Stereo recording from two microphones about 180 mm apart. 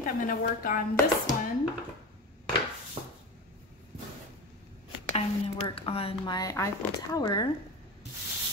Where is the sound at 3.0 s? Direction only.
40° right (ahead or behind).